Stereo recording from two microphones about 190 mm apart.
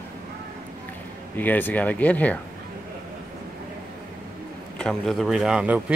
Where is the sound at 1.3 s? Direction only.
10° left (ahead or behind).